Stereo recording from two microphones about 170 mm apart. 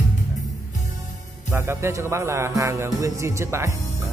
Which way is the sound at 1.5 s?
15° right (ahead or behind).